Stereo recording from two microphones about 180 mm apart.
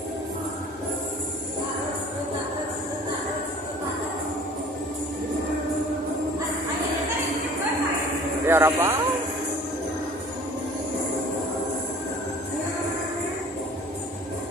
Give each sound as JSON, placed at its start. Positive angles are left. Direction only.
{"t": 8.5, "sound": "speech", "side_deg": -15}